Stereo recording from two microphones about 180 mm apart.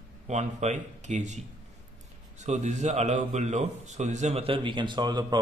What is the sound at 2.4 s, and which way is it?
A man's voice, 40° right (ahead or behind).